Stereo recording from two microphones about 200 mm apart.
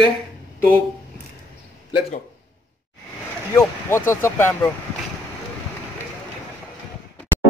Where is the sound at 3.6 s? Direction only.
10° left (ahead or behind).